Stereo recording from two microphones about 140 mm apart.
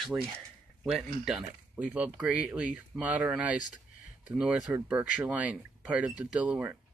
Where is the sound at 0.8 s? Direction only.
5° right (ahead or behind).